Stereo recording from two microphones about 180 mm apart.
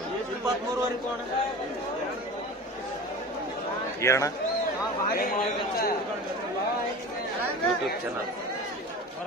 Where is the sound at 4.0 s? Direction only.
15° left (ahead or behind).